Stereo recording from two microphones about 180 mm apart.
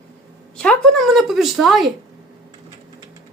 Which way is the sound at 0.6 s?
5° left (ahead or behind).